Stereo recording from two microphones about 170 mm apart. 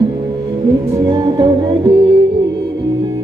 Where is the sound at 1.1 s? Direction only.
25° right (ahead or behind).